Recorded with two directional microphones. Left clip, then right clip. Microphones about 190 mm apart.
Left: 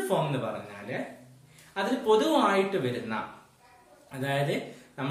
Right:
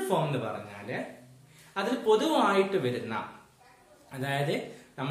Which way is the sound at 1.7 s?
10° right (ahead or behind).